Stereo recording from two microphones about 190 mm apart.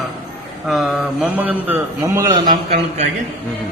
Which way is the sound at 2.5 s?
35° right (ahead or behind).